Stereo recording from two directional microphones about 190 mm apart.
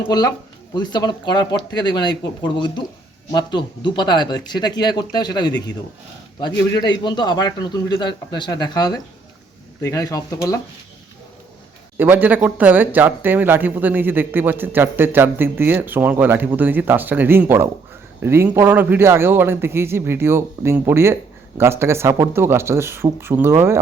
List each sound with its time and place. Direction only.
0.1 s speech: 20° left (ahead or behind)
11.9 s speech: 10° right (ahead or behind)